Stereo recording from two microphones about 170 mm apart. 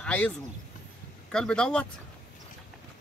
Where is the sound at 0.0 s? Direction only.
10° left (ahead or behind).